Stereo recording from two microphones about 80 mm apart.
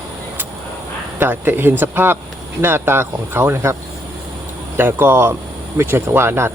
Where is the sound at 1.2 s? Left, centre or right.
Right.